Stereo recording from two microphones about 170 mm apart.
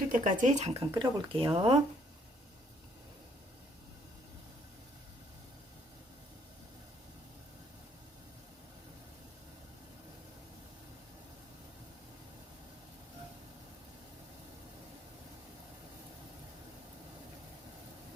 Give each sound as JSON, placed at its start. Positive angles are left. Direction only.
{"t": 0.1, "sound": "speech", "side_deg": -50}